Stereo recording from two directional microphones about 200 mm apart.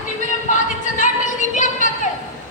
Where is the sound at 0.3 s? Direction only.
40° left (ahead or behind).